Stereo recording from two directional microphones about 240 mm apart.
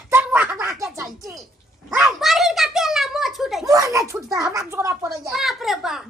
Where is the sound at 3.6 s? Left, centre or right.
Centre.